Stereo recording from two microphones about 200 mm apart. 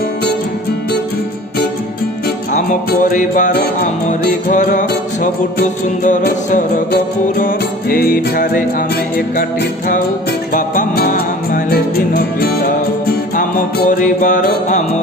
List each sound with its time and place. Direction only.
2.2 s music: 40° left (ahead or behind)